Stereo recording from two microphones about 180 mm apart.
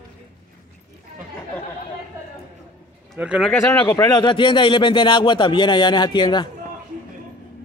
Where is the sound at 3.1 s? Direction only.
5° right (ahead or behind).